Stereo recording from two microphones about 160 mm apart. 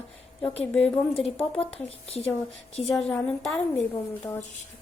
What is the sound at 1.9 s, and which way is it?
Speech, 40° left (ahead or behind).